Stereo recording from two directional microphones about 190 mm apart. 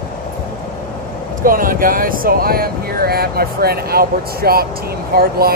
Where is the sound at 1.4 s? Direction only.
50° right (ahead or behind).